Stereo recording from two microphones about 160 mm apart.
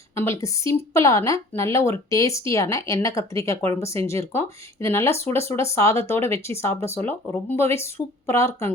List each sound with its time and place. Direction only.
0.2 s a woman's voice: 20° left (ahead or behind)